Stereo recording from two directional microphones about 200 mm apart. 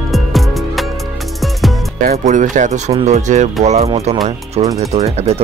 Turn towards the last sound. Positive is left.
turn(degrees=-30)  # may be behind; listen again after turning